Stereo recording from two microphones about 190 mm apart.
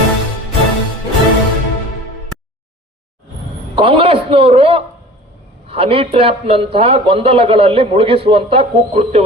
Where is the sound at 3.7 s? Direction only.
30° right (ahead or behind).